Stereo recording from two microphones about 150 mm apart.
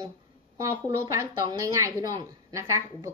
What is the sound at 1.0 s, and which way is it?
A woman's voice, 20° right (ahead or behind).